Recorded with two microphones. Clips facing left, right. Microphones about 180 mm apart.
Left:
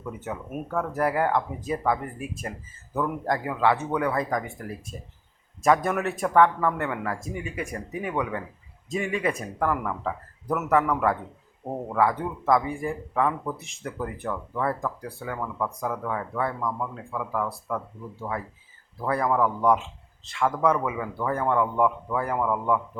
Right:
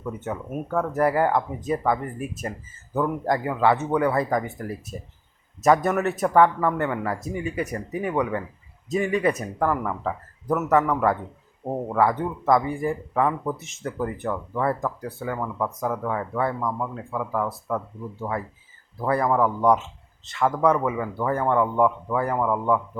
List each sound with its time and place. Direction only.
0.3 s speech: centre (ahead or behind)
11.6 s speech: 15° right (ahead or behind)
11.9 s speech: centre (ahead or behind)
15.4 s speech: 10° right (ahead or behind)
18.2 s speech: 20° right (ahead or behind)
19.0 s speech: centre (ahead or behind)